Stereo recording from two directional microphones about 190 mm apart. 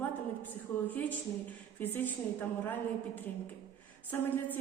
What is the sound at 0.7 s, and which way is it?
A woman's voice, 10° left (ahead or behind).